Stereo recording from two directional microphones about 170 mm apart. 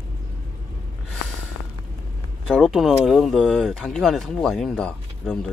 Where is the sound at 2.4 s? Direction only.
Centre (ahead or behind).